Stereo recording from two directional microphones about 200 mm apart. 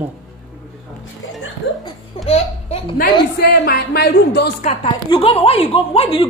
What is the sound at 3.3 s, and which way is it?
Speech, 50° left (ahead or behind).